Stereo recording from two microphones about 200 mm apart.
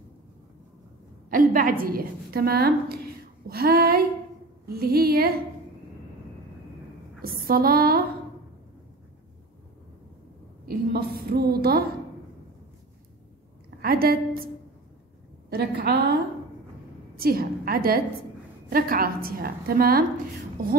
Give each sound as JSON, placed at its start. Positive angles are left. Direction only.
{"t": 1.3, "sound": "a woman's voice", "side_deg": -45}
{"t": 7.2, "sound": "a sound", "side_deg": -50}
{"t": 10.6, "sound": "a woman's voice", "side_deg": -50}
{"t": 13.7, "sound": "a woman's voice", "side_deg": -50}
{"t": 15.5, "sound": "a woman's voice", "side_deg": -50}